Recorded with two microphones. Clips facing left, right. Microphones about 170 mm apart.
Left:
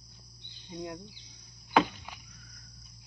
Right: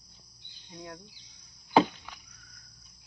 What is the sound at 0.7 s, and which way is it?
Speech, 15° left (ahead or behind).